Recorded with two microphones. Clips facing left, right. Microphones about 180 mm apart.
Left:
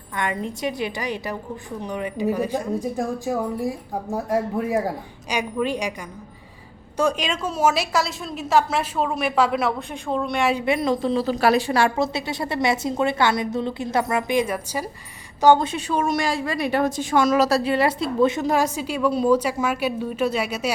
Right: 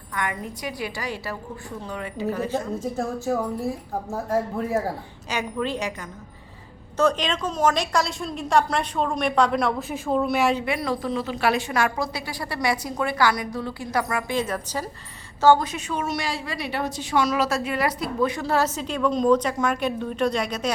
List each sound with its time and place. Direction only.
0.1 s a woman's voice: 25° left (ahead or behind)
6.9 s a woman's voice: 10° left (ahead or behind)
10.7 s a woman's voice: 20° left (ahead or behind)